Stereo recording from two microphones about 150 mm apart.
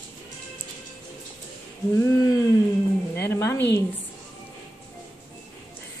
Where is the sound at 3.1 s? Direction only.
15° left (ahead or behind).